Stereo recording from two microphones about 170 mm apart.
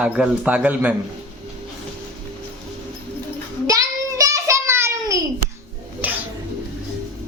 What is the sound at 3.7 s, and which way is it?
Child singing, 20° right (ahead or behind).